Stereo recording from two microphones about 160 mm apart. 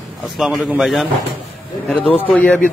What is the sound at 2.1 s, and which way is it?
Speech, 10° left (ahead or behind).